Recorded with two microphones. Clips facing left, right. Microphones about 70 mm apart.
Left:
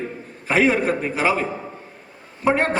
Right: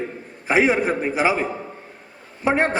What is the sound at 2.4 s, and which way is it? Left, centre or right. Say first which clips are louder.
Speech: even; centre.